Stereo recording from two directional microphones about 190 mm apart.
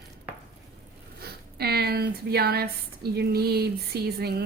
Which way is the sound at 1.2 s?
55° right (ahead or behind).